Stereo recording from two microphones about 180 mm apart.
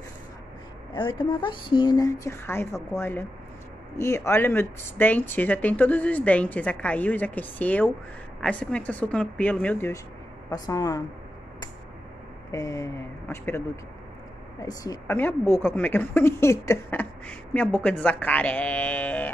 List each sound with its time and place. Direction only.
0.9 s a woman's voice: 25° left (ahead or behind); by 9.9 s 10° left (ahead or behind)
10.5 s speech: 20° left (ahead or behind)
12.4 s a woman's voice: 15° left (ahead or behind)